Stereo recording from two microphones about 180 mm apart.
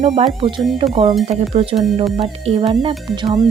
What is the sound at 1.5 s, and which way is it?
Speech, 30° right (ahead or behind).